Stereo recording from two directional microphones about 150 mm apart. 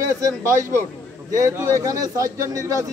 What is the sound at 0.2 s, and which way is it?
Speech, 20° right (ahead or behind).